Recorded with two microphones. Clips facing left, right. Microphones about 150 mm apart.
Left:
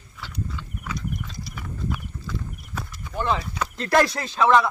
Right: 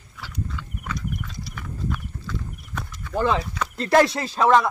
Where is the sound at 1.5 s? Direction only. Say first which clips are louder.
Even; 10° left (ahead or behind).